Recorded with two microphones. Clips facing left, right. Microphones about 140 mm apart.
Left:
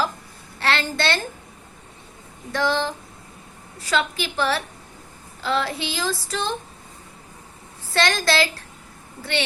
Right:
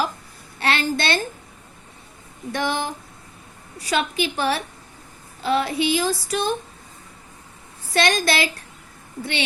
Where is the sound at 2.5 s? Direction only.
15° right (ahead or behind).